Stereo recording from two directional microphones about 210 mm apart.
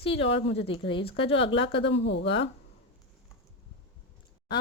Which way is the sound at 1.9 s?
60° left (ahead or behind).